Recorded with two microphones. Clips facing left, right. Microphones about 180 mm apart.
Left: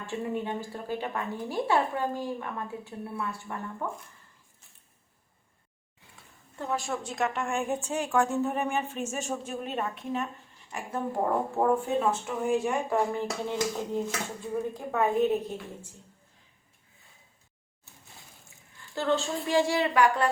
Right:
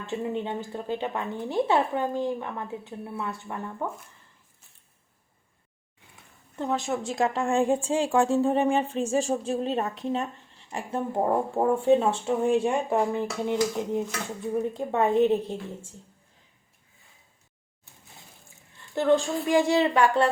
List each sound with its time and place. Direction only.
0.1 s a woman's voice: 20° right (ahead or behind)
6.6 s a woman's voice: 20° right (ahead or behind)
18.8 s a woman's voice: 15° right (ahead or behind)